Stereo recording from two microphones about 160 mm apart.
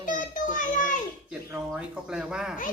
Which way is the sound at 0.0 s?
55° left (ahead or behind).